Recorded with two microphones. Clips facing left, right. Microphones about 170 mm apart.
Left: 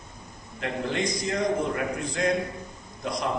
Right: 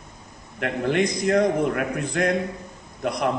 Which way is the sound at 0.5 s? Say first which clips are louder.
Right 6 dB; 60° right (ahead or behind).